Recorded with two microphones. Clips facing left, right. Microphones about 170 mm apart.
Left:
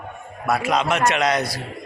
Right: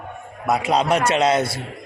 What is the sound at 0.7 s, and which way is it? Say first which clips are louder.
Speech: right 3 dB; 30° right (ahead or behind).